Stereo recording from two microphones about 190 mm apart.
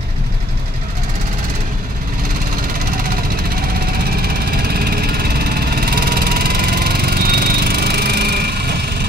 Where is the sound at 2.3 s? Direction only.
50° right (ahead or behind).